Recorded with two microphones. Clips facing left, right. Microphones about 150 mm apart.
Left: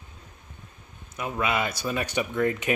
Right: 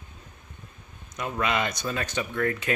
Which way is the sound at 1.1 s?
5° left (ahead or behind).